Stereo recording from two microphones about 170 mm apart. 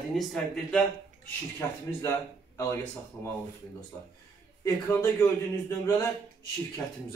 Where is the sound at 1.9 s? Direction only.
15° left (ahead or behind).